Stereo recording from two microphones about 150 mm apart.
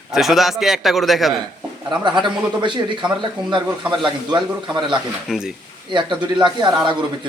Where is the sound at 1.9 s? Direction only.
30° right (ahead or behind).